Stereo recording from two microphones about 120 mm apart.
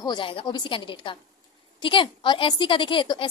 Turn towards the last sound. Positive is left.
turn(degrees=40)  # may be behind; listen again after turning